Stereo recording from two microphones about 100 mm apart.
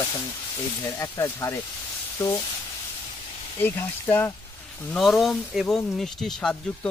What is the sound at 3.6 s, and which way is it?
Speech, 20° left (ahead or behind).